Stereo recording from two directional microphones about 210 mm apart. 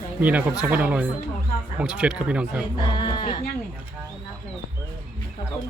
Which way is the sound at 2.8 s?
20° left (ahead or behind).